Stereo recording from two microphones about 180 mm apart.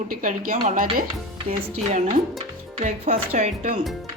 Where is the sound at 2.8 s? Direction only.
40° right (ahead or behind).